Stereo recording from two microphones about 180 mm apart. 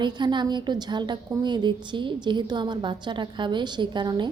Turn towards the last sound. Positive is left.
turn(degrees=-25)  # may be behind; listen again after turning